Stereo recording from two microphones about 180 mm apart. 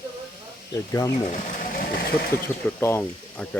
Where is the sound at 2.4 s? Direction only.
15° left (ahead or behind).